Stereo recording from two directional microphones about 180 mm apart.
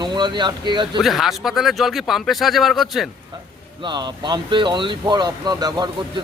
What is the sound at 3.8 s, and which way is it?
Speech, 25° right (ahead or behind).